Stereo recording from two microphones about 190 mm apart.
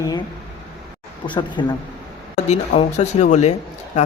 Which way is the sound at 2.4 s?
35° left (ahead or behind).